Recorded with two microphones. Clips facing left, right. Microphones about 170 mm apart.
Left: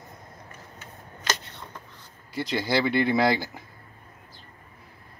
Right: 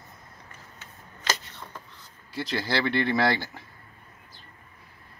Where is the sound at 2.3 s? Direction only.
15° left (ahead or behind).